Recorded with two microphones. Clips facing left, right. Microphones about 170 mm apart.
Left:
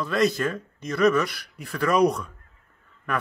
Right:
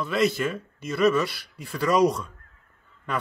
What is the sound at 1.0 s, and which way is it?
Speech, 25° right (ahead or behind).